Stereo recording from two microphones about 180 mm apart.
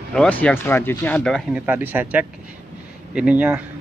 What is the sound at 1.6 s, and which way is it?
Speech, 10° right (ahead or behind).